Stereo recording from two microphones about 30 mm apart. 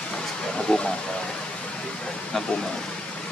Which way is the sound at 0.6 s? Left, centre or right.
Left.